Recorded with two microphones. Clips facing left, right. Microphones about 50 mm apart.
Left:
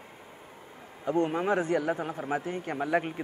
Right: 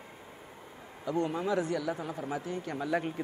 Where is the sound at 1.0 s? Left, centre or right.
Left.